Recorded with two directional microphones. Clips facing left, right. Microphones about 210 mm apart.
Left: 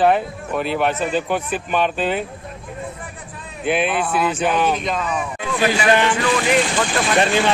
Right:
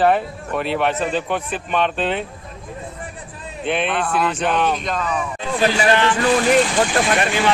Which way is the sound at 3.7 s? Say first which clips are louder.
Left 2 dB; 5° left (ahead or behind).